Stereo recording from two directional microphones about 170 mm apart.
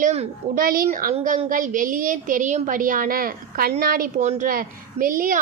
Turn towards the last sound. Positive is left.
turn(degrees=-55)  # may be behind; listen again after turning